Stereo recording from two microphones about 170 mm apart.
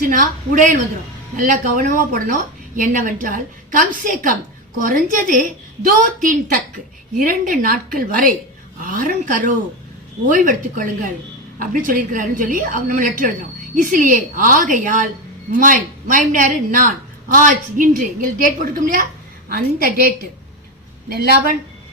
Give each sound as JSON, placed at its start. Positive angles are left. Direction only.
{"t": 0.0, "sound": "a woman's voice", "side_deg": -50}